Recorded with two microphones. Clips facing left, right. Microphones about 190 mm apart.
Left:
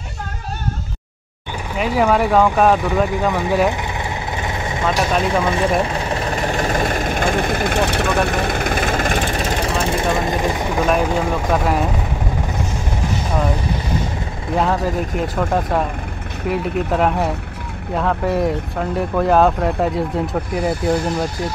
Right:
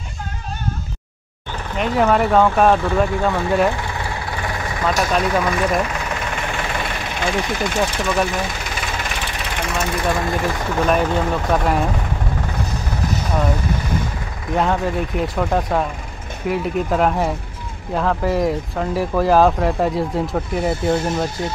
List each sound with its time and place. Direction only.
1.8 s speech: 5° left (ahead or behind)
3.2 s speech: 15° left (ahead or behind)
4.0 s vehicle: 20° left (ahead or behind)
10.9 s speech: 5° left (ahead or behind)
14.5 s speech: centre (ahead or behind)